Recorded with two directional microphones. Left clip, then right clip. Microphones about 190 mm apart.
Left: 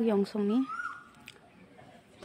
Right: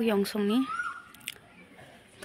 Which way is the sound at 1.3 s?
5° left (ahead or behind).